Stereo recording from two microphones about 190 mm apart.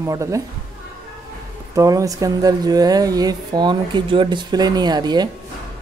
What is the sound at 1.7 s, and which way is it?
Speech, 20° right (ahead or behind).